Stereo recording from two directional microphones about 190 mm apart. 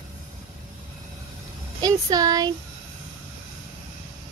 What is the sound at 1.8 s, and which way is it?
Speech, 20° right (ahead or behind).